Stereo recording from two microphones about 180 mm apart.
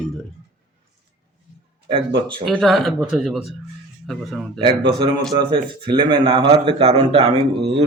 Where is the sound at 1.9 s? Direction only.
25° right (ahead or behind).